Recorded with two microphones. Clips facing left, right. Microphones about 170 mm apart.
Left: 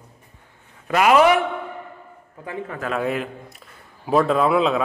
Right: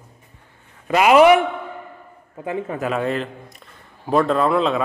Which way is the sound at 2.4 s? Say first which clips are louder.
Right 5 dB; 20° right (ahead or behind).